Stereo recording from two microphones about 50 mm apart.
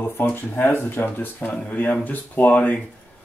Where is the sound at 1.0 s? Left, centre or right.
Left.